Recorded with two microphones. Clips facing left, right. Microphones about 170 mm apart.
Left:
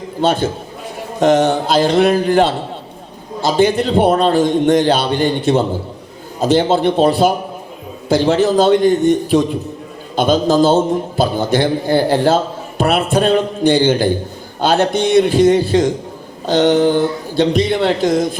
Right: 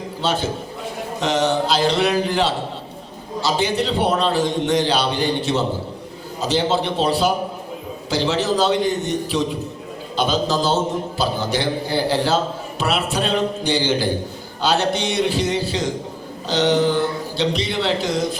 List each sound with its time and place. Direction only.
0.2 s a man's voice: 50° left (ahead or behind)